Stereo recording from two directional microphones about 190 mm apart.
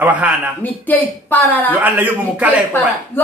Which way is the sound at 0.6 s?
10° left (ahead or behind).